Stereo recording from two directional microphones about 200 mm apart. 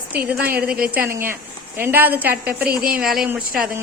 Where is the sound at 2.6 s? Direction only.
45° right (ahead or behind).